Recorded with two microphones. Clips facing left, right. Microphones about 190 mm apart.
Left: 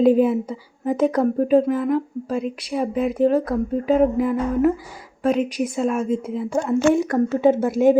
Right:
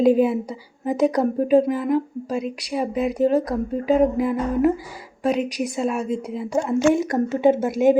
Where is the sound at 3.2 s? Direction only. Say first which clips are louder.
Left 1 dB; 35° right (ahead or behind).